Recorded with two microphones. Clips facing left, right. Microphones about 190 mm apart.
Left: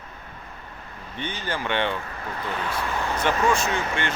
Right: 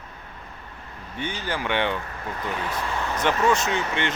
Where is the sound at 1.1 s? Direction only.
10° right (ahead or behind).